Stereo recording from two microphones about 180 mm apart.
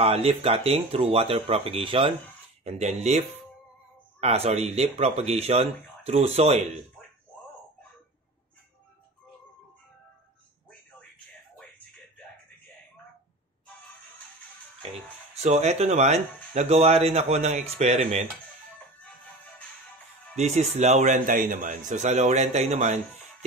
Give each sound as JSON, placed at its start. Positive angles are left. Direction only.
{"t": 0.0, "sound": "speech", "side_deg": -35}
{"t": 15.4, "sound": "speech", "side_deg": -40}
{"t": 20.3, "sound": "speech", "side_deg": -40}